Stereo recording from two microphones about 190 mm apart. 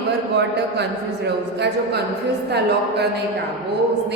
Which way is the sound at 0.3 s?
65° right (ahead or behind).